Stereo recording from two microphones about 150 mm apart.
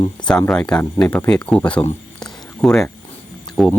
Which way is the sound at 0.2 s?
30° left (ahead or behind).